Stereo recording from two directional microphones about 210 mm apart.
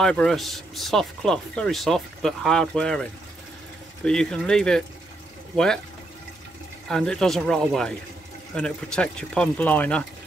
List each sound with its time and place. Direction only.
0.0 s speech: centre (ahead or behind)
6.9 s speech: 5° left (ahead or behind)